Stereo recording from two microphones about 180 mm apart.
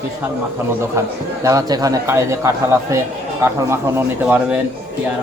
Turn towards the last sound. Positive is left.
turn(degrees=-10)  # may be behind; listen again after turning